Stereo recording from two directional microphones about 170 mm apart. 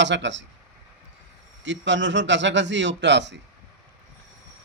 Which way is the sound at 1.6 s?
90° right.